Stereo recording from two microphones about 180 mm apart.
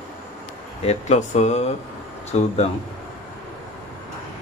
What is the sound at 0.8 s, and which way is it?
Speech, 40° left (ahead or behind).